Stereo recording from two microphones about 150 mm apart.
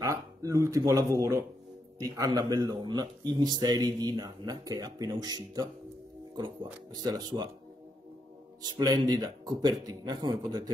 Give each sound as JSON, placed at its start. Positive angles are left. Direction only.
{"t": 0.0, "sound": "speech", "side_deg": -20}
{"t": 7.0, "sound": "speech", "side_deg": -30}
{"t": 8.6, "sound": "speech", "side_deg": -30}